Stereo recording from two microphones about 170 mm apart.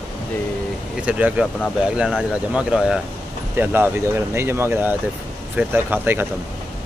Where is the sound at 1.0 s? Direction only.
10° right (ahead or behind).